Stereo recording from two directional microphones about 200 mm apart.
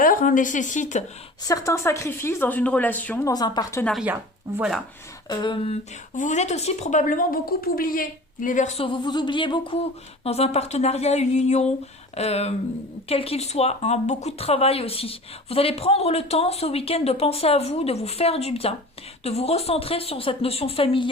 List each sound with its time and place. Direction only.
0.0 s speech: 45° left (ahead or behind)
1.5 s a woman's voice: 15° left (ahead or behind)
3.3 s a woman's voice: 20° left (ahead or behind)
3.9 s speech: 10° right (ahead or behind)
5.3 s speech: 25° left (ahead or behind)
6.1 s speech: 35° left (ahead or behind)